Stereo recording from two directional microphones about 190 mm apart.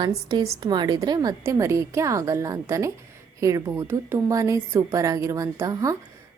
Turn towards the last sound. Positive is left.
turn(degrees=-15)  # may be behind; listen again after turning